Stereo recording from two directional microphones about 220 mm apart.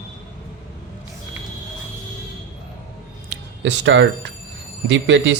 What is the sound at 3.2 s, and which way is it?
Speech, 55° right (ahead or behind).